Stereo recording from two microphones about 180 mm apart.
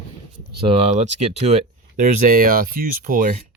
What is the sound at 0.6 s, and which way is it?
Speech, 30° right (ahead or behind).